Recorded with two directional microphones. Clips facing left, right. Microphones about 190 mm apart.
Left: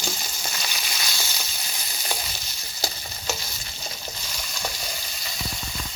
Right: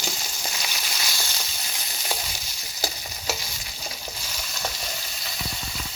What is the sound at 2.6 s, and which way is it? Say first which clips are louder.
Stir: right 1 dB; 10° right (ahead or behind).